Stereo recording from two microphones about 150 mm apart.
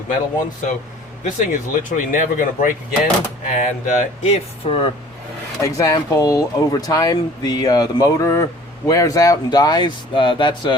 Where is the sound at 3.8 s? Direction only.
45° left (ahead or behind).